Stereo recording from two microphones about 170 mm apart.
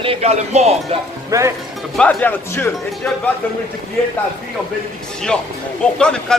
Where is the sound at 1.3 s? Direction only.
15° right (ahead or behind).